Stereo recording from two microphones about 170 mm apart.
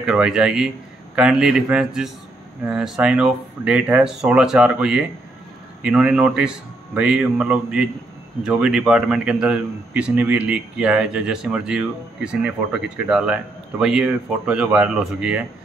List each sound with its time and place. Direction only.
0.0 s a man's voice: 5° right (ahead or behind)